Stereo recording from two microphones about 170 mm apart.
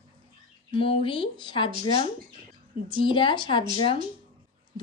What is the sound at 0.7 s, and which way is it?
Speech, 30° left (ahead or behind).